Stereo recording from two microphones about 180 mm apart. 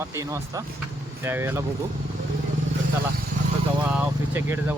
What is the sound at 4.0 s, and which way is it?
Vehicle, 10° right (ahead or behind).